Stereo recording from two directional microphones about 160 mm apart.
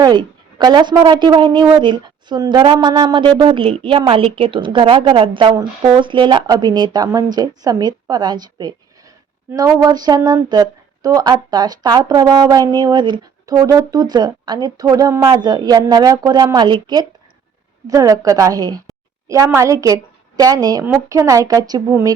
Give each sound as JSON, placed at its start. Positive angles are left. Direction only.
{"t": 0.0, "sound": "a woman's voice", "side_deg": -25}